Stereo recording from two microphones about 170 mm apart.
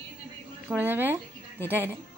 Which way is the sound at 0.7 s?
10° right (ahead or behind).